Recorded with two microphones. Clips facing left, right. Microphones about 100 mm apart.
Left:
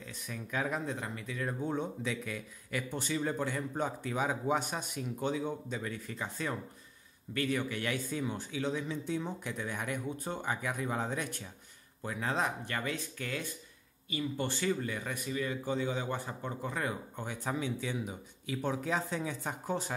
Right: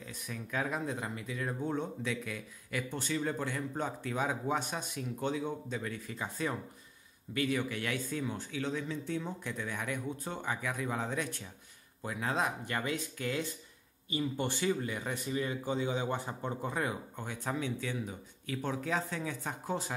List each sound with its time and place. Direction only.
0.0 s speech: centre (ahead or behind)
0.9 s a man's voice: 15° right (ahead or behind)
1.7 s speech: 5° left (ahead or behind)
12.0 s a man's voice: 5° right (ahead or behind)
17.2 s speech: 5° left (ahead or behind)
19.4 s speech: centre (ahead or behind)